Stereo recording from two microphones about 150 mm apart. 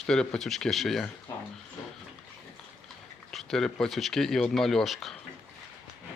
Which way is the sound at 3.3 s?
5° left (ahead or behind).